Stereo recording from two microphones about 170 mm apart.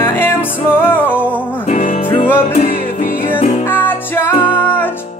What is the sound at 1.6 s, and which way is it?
Music, 50° left (ahead or behind).